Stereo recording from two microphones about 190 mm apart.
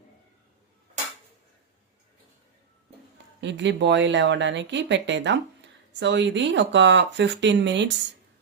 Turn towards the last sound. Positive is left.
turn(degrees=-70)  # may be behind; listen again after turning